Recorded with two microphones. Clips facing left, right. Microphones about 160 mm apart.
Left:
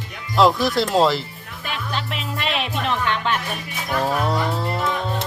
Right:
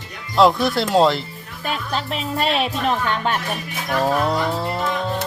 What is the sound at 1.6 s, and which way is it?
Speech, 40° right (ahead or behind).